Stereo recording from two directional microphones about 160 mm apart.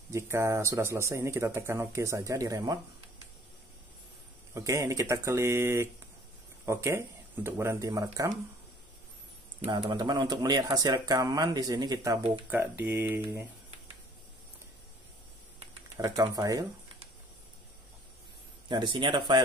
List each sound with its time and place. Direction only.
0.1 s speech: 15° right (ahead or behind)
4.6 s speech: 20° right (ahead or behind)
9.7 s speech: 25° right (ahead or behind)
12.4 s speech: 10° right (ahead or behind)
16.0 s speech: 25° right (ahead or behind)
18.7 s speech: 30° right (ahead or behind)